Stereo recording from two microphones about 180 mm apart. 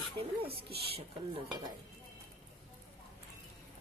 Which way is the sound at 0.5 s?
30° right (ahead or behind).